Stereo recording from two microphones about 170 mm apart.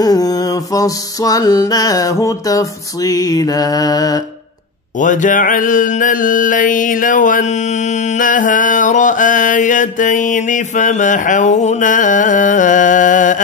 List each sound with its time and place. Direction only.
0.0 s music: 20° left (ahead or behind)
5.0 s mantra: 50° left (ahead or behind)